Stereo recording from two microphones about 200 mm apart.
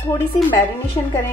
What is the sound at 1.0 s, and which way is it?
Speech, 20° left (ahead or behind).